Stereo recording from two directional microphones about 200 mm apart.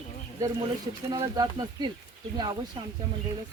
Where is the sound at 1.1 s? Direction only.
20° right (ahead or behind).